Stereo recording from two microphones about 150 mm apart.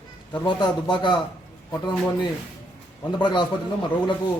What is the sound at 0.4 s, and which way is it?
Speech, 30° left (ahead or behind).